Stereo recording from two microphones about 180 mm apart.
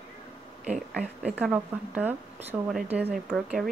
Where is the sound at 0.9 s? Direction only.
5° right (ahead or behind).